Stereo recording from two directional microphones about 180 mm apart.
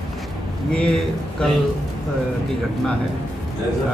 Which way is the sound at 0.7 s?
5° left (ahead or behind).